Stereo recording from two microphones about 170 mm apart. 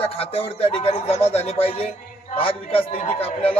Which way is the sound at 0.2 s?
35° left (ahead or behind).